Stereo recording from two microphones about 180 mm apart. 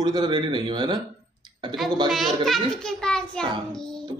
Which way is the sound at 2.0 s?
Centre (ahead or behind).